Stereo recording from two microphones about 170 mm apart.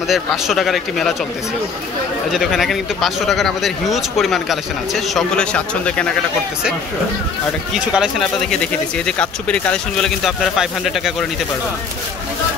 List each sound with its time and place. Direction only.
0.1 s speech: centre (ahead or behind)
2.3 s speech: centre (ahead or behind)
7.9 s speech: centre (ahead or behind)